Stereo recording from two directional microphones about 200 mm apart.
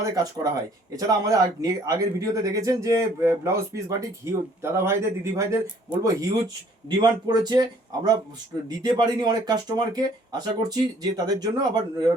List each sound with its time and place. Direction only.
0.0 s speech: 15° right (ahead or behind)